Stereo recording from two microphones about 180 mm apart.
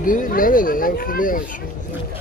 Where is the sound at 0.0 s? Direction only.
50° left (ahead or behind).